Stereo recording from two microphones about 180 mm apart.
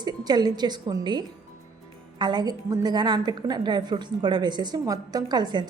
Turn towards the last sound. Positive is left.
turn(degrees=-25)  # may be behind; listen again after turning